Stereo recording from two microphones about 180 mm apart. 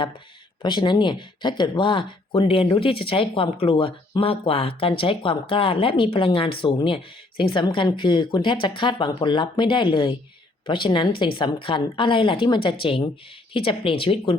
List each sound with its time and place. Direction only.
0.6 s speech: 25° left (ahead or behind)